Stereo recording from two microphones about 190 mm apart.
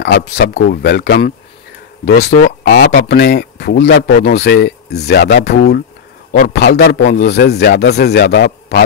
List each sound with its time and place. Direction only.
0.0 s a man's voice: 60° left (ahead or behind)
2.7 s speech: 40° left (ahead or behind)
3.1 s a man's voice: 60° left (ahead or behind)